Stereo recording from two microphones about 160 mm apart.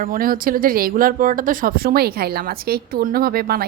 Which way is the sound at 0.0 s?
60° right (ahead or behind).